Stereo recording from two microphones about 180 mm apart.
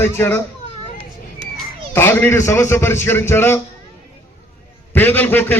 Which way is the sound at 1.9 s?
10° left (ahead or behind).